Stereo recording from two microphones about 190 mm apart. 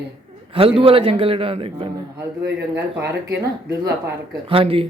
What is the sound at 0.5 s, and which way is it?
A man's voice, 30° right (ahead or behind).